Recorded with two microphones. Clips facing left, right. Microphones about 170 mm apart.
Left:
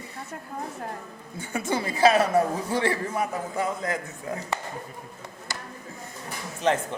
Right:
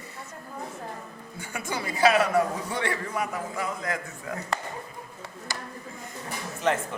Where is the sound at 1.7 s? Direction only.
30° left (ahead or behind).